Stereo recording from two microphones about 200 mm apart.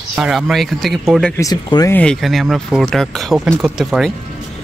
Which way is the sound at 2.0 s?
5° left (ahead or behind).